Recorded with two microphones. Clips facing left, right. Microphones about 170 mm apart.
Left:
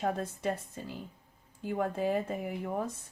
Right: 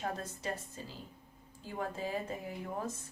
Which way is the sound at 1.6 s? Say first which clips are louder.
Left 8 dB; 60° left (ahead or behind).